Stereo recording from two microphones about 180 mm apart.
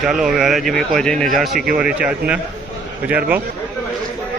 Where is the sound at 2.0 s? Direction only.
5° right (ahead or behind).